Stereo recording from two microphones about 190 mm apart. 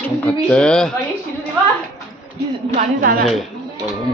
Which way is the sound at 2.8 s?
50° right (ahead or behind).